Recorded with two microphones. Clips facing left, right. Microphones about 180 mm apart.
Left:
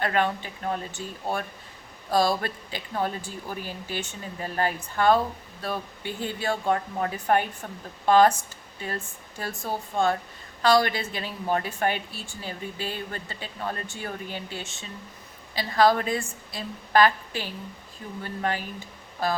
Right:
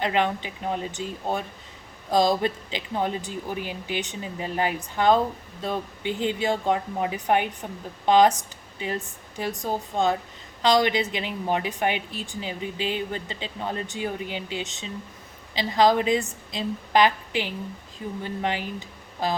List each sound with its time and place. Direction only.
0.0 s speech: 20° right (ahead or behind)